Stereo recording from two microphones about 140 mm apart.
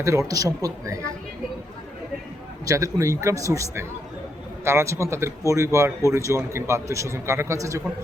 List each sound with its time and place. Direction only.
0.0 s a man's voice: 20° right (ahead or behind)
2.6 s a man's voice: 20° right (ahead or behind)